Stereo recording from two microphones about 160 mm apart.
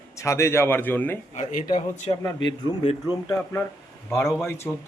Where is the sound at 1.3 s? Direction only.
55° left (ahead or behind).